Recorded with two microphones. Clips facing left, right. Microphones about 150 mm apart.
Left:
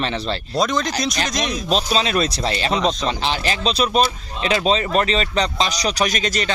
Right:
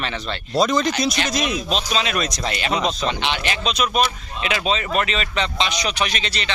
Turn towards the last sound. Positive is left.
turn(degrees=45)  # may be behind; listen again after turning